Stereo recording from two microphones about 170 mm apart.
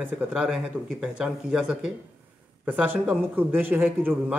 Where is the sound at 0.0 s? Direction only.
5° right (ahead or behind).